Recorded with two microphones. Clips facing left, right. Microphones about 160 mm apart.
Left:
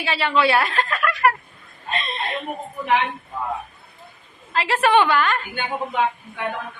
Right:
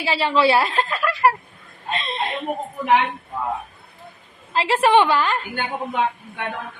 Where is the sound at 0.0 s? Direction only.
25° right (ahead or behind).